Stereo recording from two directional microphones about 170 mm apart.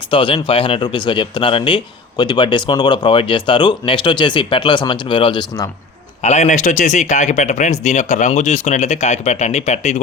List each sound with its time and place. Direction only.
0.1 s speech: 30° left (ahead or behind)
6.2 s speech: 40° left (ahead or behind)